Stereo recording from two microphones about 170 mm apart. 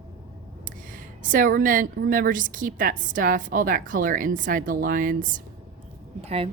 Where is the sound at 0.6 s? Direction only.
50° right (ahead or behind).